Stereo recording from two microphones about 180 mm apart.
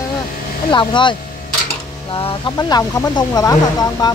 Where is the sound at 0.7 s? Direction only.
25° left (ahead or behind).